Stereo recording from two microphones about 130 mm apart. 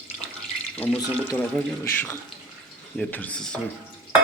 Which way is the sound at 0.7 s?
10° left (ahead or behind).